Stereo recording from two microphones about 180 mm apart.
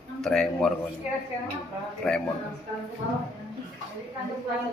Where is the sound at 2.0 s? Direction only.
5° left (ahead or behind).